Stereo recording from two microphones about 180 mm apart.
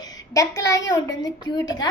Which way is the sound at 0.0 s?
20° left (ahead or behind).